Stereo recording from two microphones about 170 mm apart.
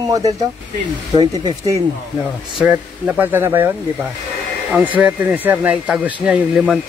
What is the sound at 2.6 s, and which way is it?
Speech, 10° right (ahead or behind).